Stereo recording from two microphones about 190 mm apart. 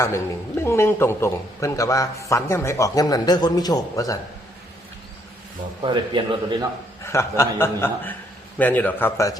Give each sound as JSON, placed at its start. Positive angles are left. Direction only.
{"t": 0.0, "sound": "a man's voice", "side_deg": 15}
{"t": 5.8, "sound": "a man's voice", "side_deg": -25}
{"t": 7.0, "sound": "a man's voice", "side_deg": 15}